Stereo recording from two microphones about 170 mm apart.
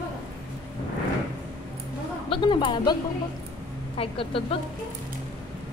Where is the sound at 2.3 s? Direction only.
25° left (ahead or behind).